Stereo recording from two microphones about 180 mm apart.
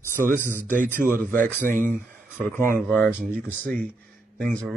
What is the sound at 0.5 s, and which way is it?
Speech, 45° right (ahead or behind).